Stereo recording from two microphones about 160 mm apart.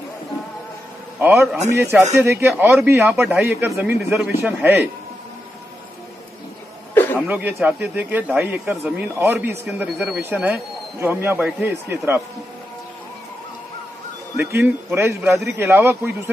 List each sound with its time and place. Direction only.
1.2 s speech: 10° right (ahead or behind)
4.5 s a man's voice: 5° right (ahead or behind)
6.9 s a sound: 15° left (ahead or behind)
7.2 s speech: 10° right (ahead or behind)
14.3 s speech: 10° right (ahead or behind)